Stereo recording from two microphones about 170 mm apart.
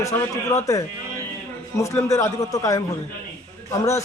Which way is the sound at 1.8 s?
15° left (ahead or behind).